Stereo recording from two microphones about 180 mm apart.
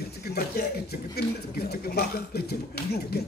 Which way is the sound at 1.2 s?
60° left (ahead or behind).